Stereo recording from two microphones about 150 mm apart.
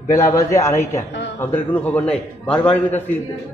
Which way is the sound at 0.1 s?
20° left (ahead or behind).